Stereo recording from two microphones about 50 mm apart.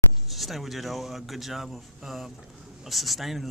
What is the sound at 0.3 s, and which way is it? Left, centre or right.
Speech, centre.